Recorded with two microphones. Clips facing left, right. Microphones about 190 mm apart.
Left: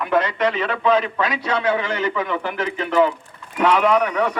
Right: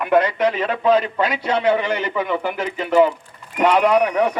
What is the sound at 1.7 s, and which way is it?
A man's voice, 15° right (ahead or behind).